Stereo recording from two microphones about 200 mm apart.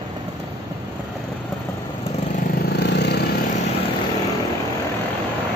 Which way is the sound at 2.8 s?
55° left (ahead or behind).